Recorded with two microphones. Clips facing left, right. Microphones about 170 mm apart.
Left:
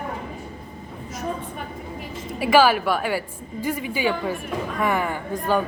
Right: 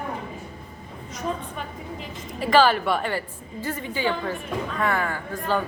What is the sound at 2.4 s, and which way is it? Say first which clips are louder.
A woman's voice: left 2 dB; 10° left (ahead or behind).